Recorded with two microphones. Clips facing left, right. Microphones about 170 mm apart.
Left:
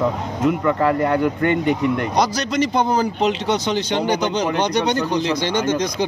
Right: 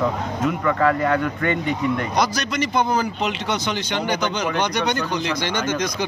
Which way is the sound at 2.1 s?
35° left (ahead or behind).